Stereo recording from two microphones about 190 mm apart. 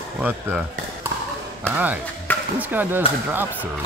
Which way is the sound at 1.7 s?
10° right (ahead or behind).